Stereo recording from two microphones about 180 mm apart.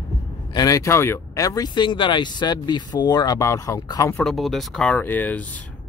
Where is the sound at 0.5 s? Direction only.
20° left (ahead or behind).